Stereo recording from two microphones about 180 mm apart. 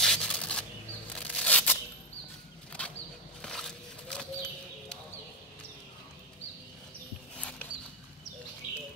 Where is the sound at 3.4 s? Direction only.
Centre (ahead or behind).